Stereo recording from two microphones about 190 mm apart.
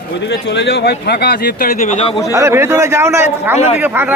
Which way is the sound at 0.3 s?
70° left (ahead or behind).